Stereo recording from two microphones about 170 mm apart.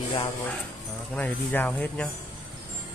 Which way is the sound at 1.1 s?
10° left (ahead or behind).